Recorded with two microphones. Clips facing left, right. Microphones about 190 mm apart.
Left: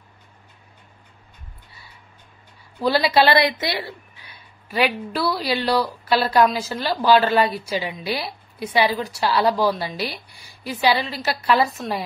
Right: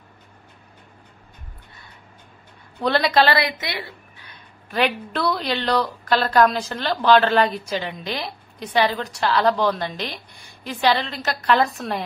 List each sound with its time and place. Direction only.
2.8 s a woman's voice: 5° left (ahead or behind)
3.3 s a woman's voice: 30° left (ahead or behind)
4.2 s speech: 5° left (ahead or behind)